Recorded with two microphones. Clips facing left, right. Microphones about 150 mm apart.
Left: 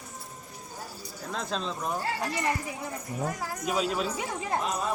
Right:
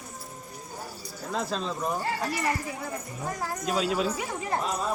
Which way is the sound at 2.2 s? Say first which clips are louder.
Right 1 dB; 15° left (ahead or behind).